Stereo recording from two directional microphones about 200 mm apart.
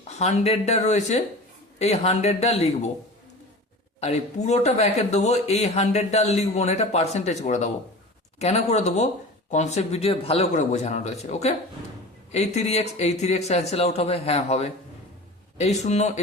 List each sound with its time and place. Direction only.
0.1 s speech: 35° left (ahead or behind)
4.0 s speech: 35° left (ahead or behind)